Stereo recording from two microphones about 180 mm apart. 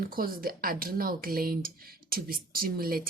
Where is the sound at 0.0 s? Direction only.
55° right (ahead or behind).